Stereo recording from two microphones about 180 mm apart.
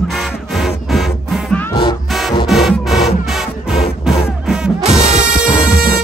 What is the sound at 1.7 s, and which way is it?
Music, 25° left (ahead or behind).